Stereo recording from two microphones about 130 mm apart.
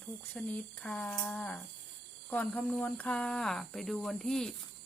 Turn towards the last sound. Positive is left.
turn(degrees=5)  # may be behind; listen again after turning